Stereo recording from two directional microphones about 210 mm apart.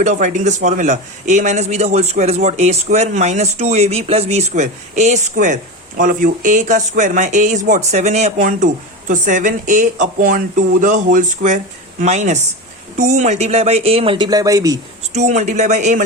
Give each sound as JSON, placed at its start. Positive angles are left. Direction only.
{"t": 0.0, "sound": "speech", "side_deg": -35}
{"t": 15.1, "sound": "speech", "side_deg": -35}